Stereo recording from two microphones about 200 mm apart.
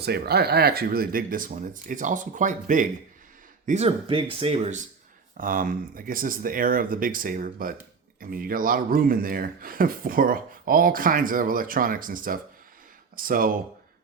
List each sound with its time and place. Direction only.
0.0 s speech: 50° right (ahead or behind)